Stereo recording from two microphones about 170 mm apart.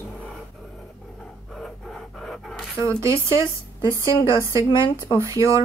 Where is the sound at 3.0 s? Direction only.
15° right (ahead or behind).